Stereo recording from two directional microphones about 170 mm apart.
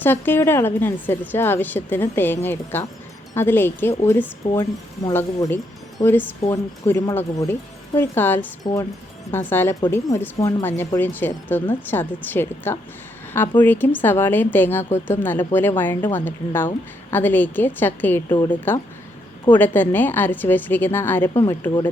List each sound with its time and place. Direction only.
0.0 s a woman's voice: 10° left (ahead or behind)